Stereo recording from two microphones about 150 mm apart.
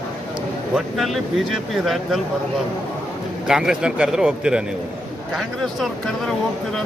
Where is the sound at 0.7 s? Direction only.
Centre (ahead or behind).